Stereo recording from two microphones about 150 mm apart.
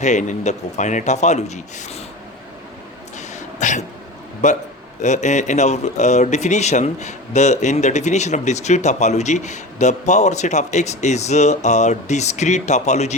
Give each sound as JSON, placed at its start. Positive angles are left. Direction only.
{"t": 0.0, "sound": "speech", "side_deg": 55}
{"t": 3.2, "sound": "throat clearing", "side_deg": 55}
{"t": 4.4, "sound": "speech", "side_deg": 50}